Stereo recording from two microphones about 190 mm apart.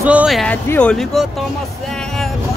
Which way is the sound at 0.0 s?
5° right (ahead or behind).